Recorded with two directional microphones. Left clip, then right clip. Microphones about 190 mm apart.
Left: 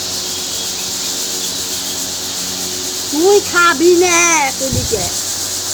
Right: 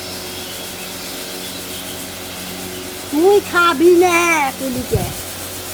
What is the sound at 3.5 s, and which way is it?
Speech, 40° right (ahead or behind).